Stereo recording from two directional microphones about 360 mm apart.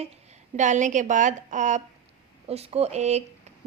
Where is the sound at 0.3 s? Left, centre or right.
Centre.